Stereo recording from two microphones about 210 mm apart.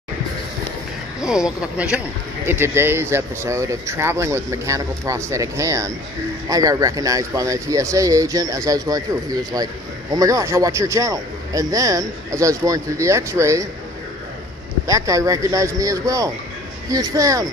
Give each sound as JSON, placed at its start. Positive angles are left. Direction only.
{"t": 1.2, "sound": "a man's voice", "side_deg": -5}
{"t": 14.9, "sound": "a man's voice", "side_deg": -15}